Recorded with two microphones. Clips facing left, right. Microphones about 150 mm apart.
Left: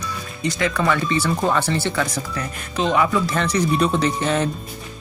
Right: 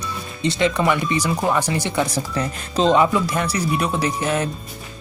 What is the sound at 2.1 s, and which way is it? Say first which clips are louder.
Speech: right 4 dB; 30° right (ahead or behind).